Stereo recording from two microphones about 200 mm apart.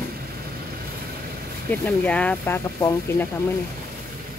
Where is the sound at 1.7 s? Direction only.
5° left (ahead or behind).